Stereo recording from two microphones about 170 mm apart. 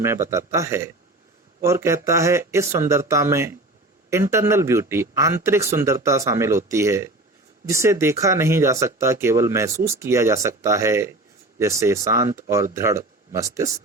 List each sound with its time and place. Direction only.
0.0 s speech: 15° right (ahead or behind)